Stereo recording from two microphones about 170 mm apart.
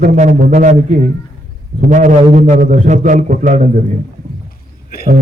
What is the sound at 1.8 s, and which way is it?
Speech, 50° right (ahead or behind).